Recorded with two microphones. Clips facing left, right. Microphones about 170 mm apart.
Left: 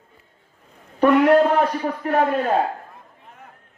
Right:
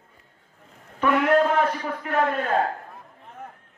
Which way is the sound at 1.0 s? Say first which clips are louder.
Left 5 dB; 40° left (ahead or behind).